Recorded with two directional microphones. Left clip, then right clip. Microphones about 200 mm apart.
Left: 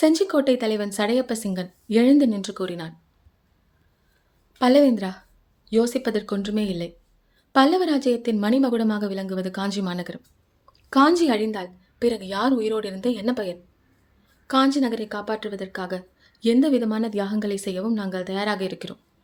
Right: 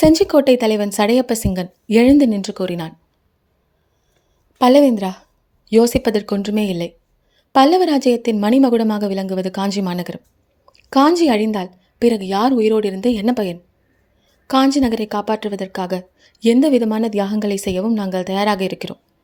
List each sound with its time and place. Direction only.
0.0 s speech: 30° right (ahead or behind)
4.5 s a woman's voice: 30° right (ahead or behind)